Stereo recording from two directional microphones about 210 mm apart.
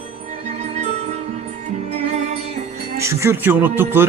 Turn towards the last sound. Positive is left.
turn(degrees=-10)  # may be behind; listen again after turning